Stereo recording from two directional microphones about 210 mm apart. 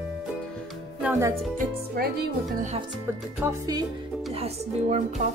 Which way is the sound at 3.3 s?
15° right (ahead or behind).